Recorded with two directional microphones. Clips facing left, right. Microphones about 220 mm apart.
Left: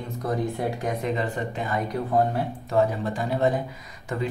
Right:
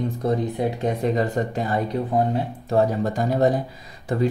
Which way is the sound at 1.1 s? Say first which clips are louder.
Right 5 dB; 40° right (ahead or behind).